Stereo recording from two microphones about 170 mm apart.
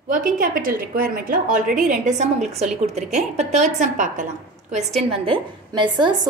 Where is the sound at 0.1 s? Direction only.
55° right (ahead or behind).